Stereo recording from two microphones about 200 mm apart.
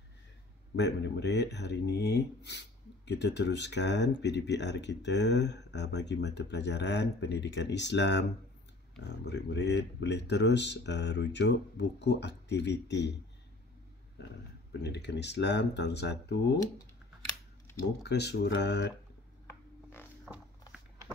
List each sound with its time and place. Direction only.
0.7 s speech: 60° left (ahead or behind)
14.7 s speech: 60° left (ahead or behind)
18.0 s speech: 55° left (ahead or behind)
19.4 s rub: 10° left (ahead or behind)